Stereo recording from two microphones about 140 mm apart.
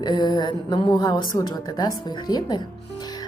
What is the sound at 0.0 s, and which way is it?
A woman's voice, 35° left (ahead or behind).